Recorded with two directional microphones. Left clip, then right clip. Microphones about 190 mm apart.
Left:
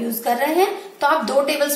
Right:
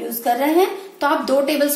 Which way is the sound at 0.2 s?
25° right (ahead or behind).